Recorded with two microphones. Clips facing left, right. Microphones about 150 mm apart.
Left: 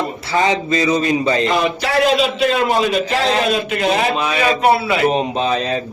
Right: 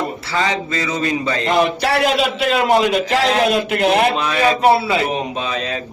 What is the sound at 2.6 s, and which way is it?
Speech, 75° right (ahead or behind).